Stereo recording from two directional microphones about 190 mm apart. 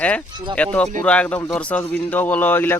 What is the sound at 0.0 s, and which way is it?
Speech, 5° left (ahead or behind).